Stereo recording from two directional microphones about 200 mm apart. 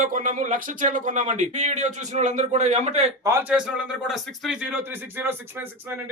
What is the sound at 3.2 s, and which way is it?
A man's voice, 10° right (ahead or behind).